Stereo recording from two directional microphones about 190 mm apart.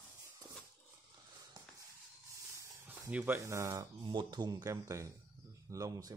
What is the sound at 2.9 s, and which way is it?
Speech, 10° right (ahead or behind).